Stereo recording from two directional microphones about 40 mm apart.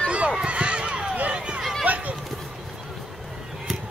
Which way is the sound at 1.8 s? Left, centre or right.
Right.